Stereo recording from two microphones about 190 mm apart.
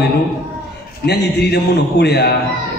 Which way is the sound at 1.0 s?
60° left (ahead or behind).